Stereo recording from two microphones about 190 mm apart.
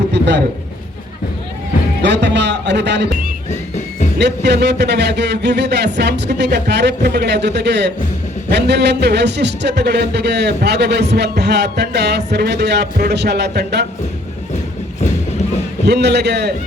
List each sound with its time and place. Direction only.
0.1 s a sound: 65° right (ahead or behind)
2.0 s a man's voice: 65° right (ahead or behind)
4.2 s a man's voice: 60° right (ahead or behind)
15.9 s a man's voice: 60° right (ahead or behind)